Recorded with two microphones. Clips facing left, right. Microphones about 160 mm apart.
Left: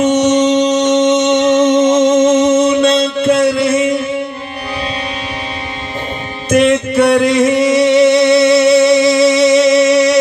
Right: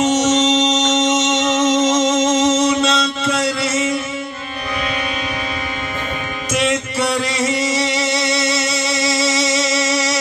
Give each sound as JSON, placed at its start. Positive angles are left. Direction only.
{"t": 0.0, "sound": "music", "side_deg": 60}
{"t": 6.5, "sound": "music", "side_deg": 60}